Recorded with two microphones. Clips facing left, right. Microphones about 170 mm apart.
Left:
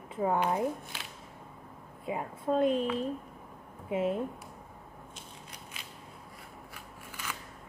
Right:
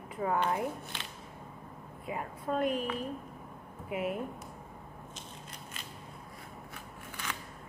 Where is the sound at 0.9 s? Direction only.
5° left (ahead or behind).